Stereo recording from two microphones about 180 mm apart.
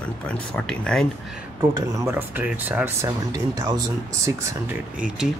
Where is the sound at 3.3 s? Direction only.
20° right (ahead or behind).